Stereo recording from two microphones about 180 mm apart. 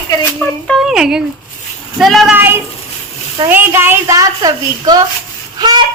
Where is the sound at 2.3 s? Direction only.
10° right (ahead or behind).